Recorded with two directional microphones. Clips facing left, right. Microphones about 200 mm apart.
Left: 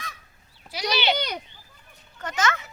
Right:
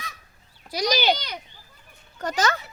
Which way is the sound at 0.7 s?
40° right (ahead or behind).